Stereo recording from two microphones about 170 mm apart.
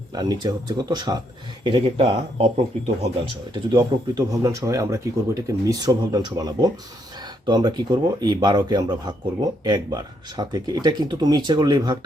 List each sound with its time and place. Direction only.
0.1 s a man's voice: 25° right (ahead or behind)
3.5 s a man's voice: 25° right (ahead or behind)